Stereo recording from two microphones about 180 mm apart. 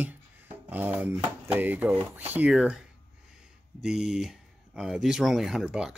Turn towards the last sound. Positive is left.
turn(degrees=-5)  # may be behind; listen again after turning